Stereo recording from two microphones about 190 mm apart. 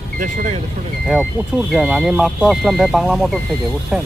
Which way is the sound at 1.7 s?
Centre (ahead or behind).